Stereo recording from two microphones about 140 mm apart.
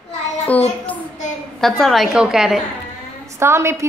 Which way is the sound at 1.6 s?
Centre (ahead or behind).